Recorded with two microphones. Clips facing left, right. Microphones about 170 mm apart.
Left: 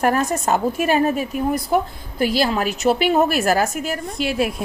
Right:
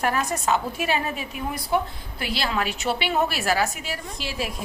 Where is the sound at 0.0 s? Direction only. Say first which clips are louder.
Left 6 dB; 45° left (ahead or behind).